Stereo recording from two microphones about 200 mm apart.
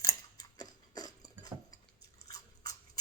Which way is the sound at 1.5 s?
15° right (ahead or behind).